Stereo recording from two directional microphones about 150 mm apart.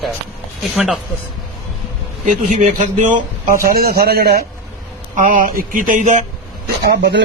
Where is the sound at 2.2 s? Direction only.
55° right (ahead or behind).